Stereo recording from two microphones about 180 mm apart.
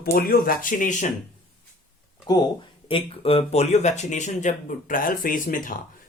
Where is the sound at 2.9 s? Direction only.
30° left (ahead or behind); by 5.8 s 50° left (ahead or behind).